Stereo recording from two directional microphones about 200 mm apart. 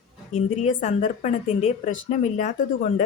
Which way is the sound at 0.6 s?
35° left (ahead or behind).